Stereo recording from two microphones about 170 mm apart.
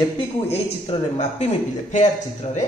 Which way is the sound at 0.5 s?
40° left (ahead or behind).